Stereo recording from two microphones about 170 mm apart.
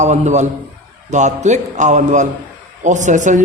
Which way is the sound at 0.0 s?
45° right (ahead or behind).